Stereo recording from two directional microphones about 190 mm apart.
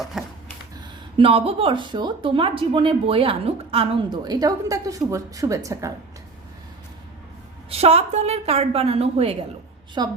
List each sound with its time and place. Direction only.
0.0 s a sound: centre (ahead or behind)
1.2 s speech: 30° right (ahead or behind)
7.7 s a woman's voice: 30° right (ahead or behind)